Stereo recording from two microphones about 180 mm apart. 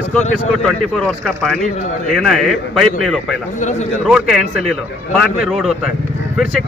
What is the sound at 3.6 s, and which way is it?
Speech, 40° left (ahead or behind).